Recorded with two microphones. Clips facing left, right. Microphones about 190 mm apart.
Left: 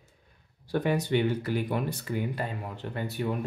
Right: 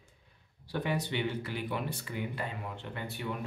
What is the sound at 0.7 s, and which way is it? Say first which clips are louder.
Speech: left 7 dB; 45° left (ahead or behind).